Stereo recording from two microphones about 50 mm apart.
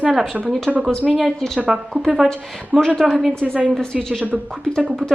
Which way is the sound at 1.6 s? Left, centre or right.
Right.